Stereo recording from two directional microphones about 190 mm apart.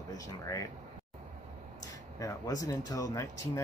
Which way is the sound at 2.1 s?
20° left (ahead or behind).